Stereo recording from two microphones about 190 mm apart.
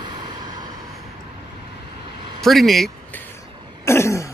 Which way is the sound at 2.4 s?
Centre (ahead or behind).